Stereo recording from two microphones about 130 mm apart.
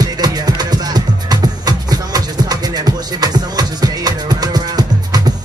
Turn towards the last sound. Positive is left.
turn(degrees=-30)  # may be behind; listen again after turning